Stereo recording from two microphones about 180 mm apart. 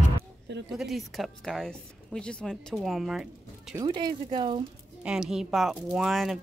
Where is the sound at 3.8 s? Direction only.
25° right (ahead or behind).